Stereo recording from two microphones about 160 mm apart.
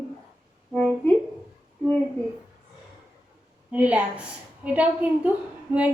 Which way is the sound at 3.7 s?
10° right (ahead or behind).